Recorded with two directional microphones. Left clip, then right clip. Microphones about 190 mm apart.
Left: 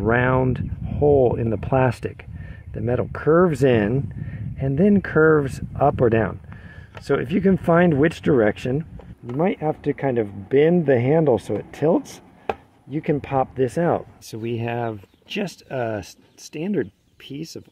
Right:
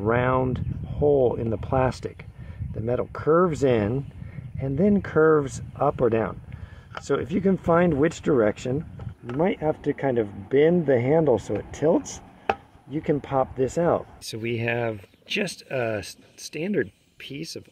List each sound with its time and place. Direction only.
0.0 s speech: 50° left (ahead or behind)